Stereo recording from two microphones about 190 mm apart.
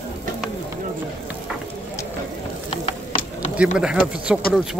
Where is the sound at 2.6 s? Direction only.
30° left (ahead or behind).